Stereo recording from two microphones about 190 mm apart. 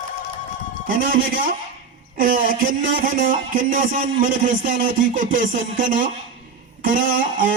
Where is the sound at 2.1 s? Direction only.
45° right (ahead or behind).